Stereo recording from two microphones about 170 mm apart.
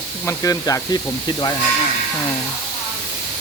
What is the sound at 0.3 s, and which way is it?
Speech, 20° left (ahead or behind).